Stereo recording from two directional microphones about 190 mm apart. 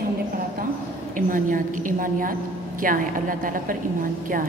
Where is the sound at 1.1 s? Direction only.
45° right (ahead or behind).